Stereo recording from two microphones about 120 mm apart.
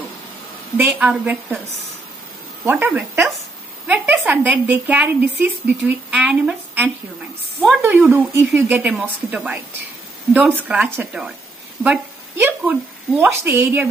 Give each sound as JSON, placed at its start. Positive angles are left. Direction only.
{"t": 0.7, "sound": "a woman's voice", "side_deg": -10}
{"t": 2.6, "sound": "a woman's voice", "side_deg": -15}